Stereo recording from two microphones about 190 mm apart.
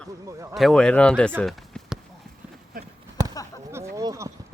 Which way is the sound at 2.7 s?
50° right (ahead or behind).